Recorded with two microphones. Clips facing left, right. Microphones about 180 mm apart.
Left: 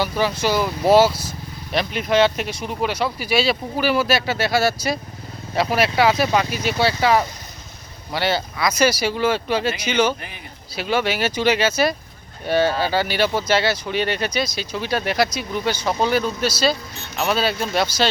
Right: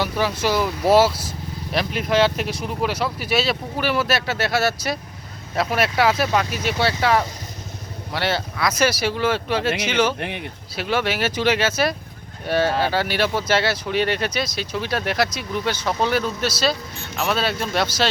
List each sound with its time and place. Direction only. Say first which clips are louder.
0.0 s speech: left 1 dB; centre (ahead or behind)
10.2 s speech: right 9 dB; 70° right (ahead or behind)
10.8 s speech: left 1 dB; centre (ahead or behind)